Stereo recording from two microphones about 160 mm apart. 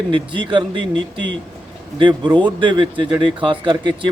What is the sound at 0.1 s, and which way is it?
Speech, 30° right (ahead or behind).